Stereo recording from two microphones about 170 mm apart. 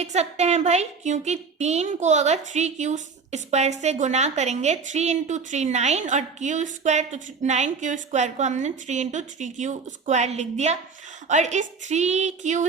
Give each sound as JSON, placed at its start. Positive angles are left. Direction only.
{"t": 0.0, "sound": "a woman's voice", "side_deg": -40}